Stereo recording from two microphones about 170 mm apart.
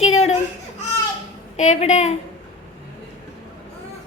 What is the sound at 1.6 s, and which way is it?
Speech, 45° left (ahead or behind).